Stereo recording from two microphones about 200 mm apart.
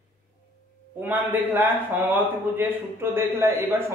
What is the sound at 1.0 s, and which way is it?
A man's voice, 10° right (ahead or behind).